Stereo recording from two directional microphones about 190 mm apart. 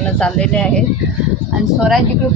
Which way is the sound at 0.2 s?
5° left (ahead or behind).